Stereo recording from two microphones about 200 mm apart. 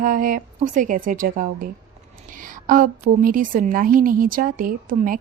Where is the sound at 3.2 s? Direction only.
45° right (ahead or behind).